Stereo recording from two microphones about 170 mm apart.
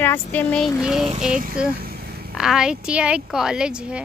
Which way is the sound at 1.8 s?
65° right (ahead or behind).